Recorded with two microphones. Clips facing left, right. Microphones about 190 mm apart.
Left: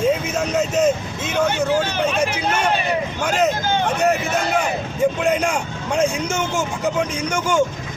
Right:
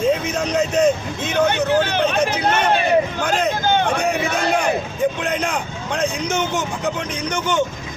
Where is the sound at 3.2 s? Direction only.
5° left (ahead or behind).